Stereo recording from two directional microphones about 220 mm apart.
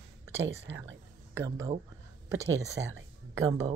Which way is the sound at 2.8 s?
60° right (ahead or behind).